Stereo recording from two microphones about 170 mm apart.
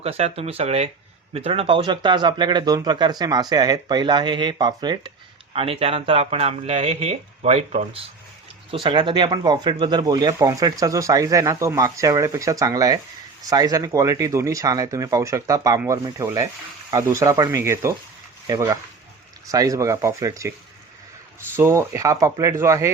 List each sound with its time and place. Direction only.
0.0 s speech: 35° right (ahead or behind)
8.7 s speech: 30° right (ahead or behind)
21.5 s speech: 15° right (ahead or behind)